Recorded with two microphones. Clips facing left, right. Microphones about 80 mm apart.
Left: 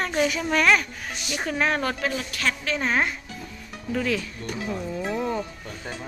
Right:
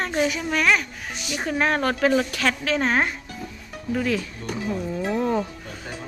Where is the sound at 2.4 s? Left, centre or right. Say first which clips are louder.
Right 3 dB; right.